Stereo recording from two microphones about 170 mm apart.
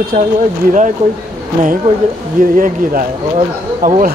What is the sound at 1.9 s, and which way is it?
Speech, 50° right (ahead or behind).